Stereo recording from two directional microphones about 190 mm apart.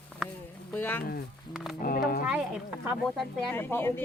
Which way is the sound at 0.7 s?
10° left (ahead or behind).